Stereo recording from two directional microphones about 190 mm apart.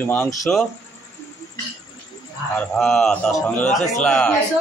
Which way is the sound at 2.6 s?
5° left (ahead or behind).